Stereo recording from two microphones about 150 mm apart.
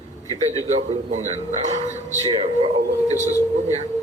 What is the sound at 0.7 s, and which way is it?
Speech, 50° right (ahead or behind).